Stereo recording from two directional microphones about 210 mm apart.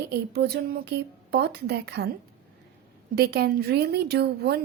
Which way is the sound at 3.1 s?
50° right (ahead or behind).